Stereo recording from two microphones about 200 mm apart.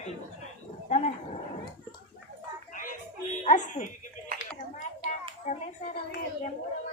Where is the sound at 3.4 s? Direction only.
35° left (ahead or behind).